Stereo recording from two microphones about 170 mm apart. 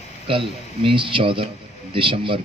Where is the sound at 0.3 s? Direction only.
30° right (ahead or behind).